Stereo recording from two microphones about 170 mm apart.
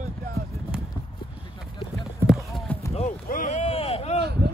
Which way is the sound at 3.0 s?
50° left (ahead or behind).